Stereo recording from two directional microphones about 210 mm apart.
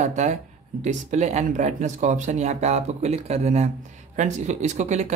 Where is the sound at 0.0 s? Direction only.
35° right (ahead or behind).